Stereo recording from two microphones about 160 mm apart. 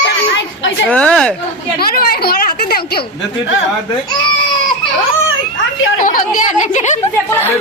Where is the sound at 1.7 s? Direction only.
70° left (ahead or behind).